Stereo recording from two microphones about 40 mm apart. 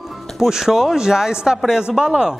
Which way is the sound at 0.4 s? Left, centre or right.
Centre.